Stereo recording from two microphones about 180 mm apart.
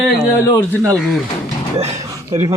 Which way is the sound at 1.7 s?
35° right (ahead or behind).